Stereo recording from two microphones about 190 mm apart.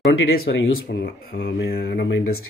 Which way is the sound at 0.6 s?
80° left.